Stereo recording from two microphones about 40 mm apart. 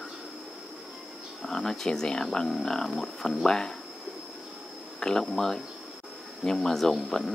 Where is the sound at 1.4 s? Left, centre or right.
Centre.